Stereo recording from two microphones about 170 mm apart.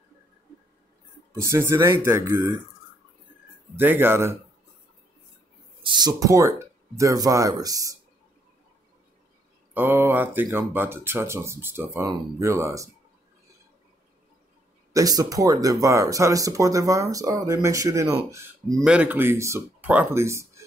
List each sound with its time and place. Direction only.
1.4 s speech: 15° right (ahead or behind)
3.7 s speech: 10° right (ahead or behind)
5.8 s speech: 25° right (ahead or behind)
9.8 s speech: 15° right (ahead or behind)
14.9 s speech: 20° right (ahead or behind)
18.9 s speech: 10° right (ahead or behind)